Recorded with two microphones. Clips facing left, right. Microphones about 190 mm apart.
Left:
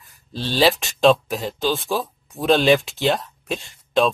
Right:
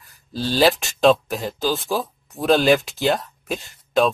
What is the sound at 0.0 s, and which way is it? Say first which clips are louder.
Speech: right 3 dB; centre (ahead or behind).